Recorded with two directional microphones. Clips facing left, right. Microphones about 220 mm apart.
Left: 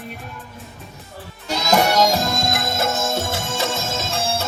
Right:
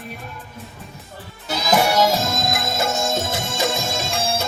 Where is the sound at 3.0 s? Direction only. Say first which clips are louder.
Even; 15° right (ahead or behind).